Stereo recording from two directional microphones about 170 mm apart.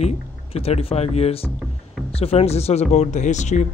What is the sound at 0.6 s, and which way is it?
A man's voice, 35° left (ahead or behind).